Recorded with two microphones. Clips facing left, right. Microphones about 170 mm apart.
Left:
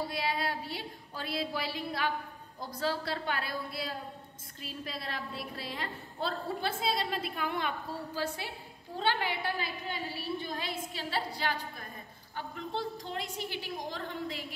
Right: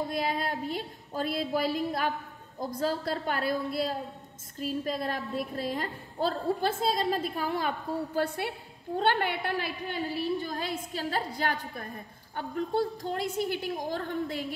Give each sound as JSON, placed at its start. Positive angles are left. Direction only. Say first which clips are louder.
{"t": 0.1, "sound": "a woman's voice", "louder": "right 3 dB", "side_deg": -50}
{"t": 8.1, "sound": "a woman's voice", "louder": "right 5 dB", "side_deg": -60}